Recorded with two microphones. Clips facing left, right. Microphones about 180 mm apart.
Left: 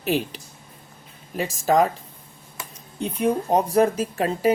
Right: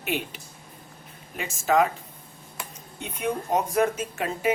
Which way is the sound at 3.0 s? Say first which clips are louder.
Left 7 dB; 35° left (ahead or behind).